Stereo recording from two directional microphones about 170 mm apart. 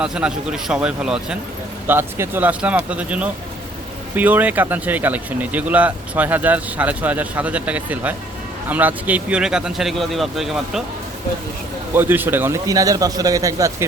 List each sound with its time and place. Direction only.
0.0 s speech: 5° right (ahead or behind)
11.9 s a man's voice: 10° right (ahead or behind)